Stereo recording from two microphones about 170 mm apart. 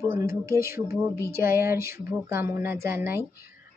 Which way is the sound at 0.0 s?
15° right (ahead or behind).